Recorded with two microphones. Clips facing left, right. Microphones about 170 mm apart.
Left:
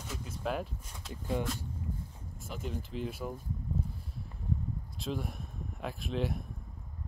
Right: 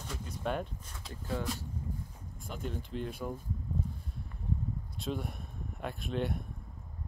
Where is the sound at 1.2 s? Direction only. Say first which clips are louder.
Left 2 dB; 20° left (ahead or behind).